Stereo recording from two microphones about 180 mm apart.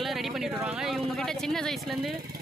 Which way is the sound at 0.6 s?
5° right (ahead or behind).